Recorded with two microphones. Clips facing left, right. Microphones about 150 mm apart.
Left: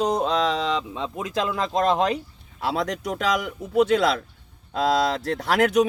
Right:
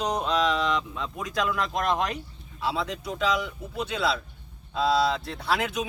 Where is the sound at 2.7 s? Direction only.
85° left.